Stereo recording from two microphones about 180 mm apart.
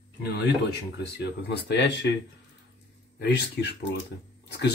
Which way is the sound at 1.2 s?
70° left (ahead or behind).